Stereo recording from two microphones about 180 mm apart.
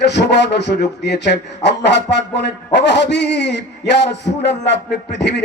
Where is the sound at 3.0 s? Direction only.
70° left (ahead or behind).